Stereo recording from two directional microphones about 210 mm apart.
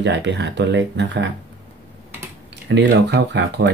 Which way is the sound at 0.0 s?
55° right (ahead or behind).